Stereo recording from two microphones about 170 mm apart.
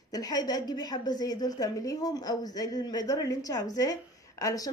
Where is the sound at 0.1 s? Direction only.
20° left (ahead or behind).